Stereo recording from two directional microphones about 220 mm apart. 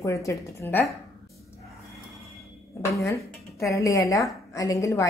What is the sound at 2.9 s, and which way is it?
A woman's voice, 15° left (ahead or behind).